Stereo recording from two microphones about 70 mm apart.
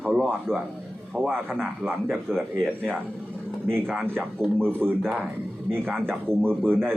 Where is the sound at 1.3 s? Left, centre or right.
Right.